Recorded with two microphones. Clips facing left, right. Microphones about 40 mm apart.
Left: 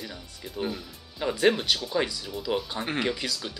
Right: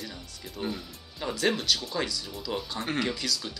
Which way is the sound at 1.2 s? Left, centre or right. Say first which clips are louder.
Left 4 dB; centre.